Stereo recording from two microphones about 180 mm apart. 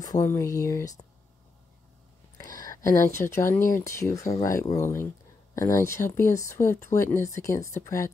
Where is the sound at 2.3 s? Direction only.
20° left (ahead or behind).